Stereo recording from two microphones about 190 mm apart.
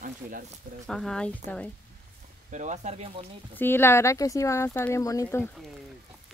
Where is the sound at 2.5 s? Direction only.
40° right (ahead or behind).